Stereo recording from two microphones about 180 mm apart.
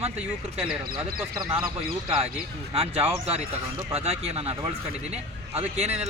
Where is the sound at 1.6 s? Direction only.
25° right (ahead or behind).